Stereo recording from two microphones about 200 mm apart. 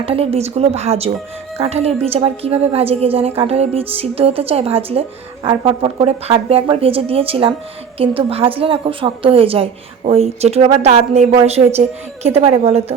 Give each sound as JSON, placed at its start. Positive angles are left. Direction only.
{"t": 0.0, "sound": "a woman's voice", "side_deg": -30}